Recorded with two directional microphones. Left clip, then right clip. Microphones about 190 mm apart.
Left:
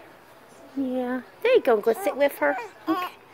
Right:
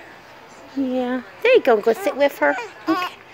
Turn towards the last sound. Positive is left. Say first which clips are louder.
# right 5 dB
turn(degrees=15)  # may be behind; listen again after turning